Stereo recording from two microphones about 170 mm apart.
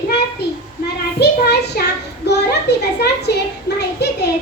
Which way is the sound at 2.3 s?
80° left.